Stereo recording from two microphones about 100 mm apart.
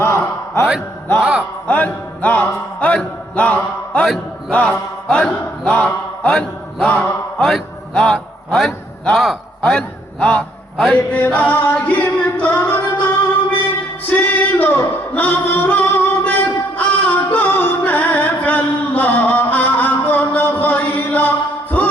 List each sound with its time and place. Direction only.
0.0 s a sound: 30° left (ahead or behind)
1.2 s speech: 10° right (ahead or behind)
1.6 s music: 15° left (ahead or behind)
2.8 s a man's voice: 15° left (ahead or behind)
4.0 s mantra: centre (ahead or behind)
4.5 s singing: 15° left (ahead or behind)
5.0 s a sound: 10° left (ahead or behind)
6.3 s a man's voice: 5° left (ahead or behind)
11.1 s singing: 15° left (ahead or behind)
14.1 s singing: 20° left (ahead or behind)